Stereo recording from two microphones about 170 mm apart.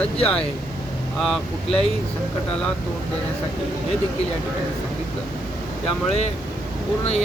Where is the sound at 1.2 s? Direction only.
Centre (ahead or behind).